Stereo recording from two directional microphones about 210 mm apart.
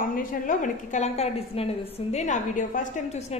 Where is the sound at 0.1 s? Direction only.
40° left (ahead or behind).